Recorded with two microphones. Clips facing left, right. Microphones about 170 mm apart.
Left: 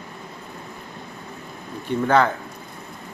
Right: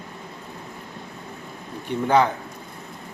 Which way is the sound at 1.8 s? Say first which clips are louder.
Left 1 dB; 15° right (ahead or behind).